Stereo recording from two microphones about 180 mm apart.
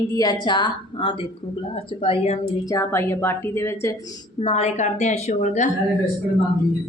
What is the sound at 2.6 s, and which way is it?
A woman's voice, 15° left (ahead or behind).